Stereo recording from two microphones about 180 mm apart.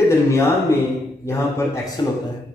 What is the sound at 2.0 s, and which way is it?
Speech, 25° left (ahead or behind).